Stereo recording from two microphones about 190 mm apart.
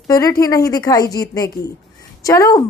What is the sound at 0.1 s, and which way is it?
Speech, 20° left (ahead or behind).